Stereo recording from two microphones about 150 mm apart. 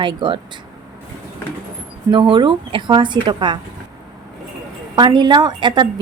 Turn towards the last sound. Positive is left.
turn(degrees=-30)  # may be behind; listen again after turning